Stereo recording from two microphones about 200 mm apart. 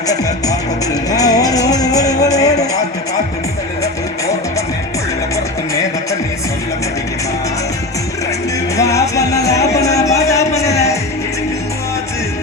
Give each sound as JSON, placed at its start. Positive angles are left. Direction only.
{"t": 1.1, "sound": "music", "side_deg": 20}
{"t": 8.7, "sound": "music", "side_deg": 15}